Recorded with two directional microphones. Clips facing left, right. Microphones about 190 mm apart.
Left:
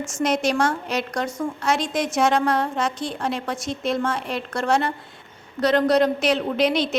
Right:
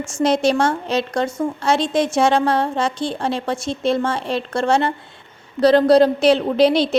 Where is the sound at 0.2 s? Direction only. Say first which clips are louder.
Right 5 dB; 30° right (ahead or behind).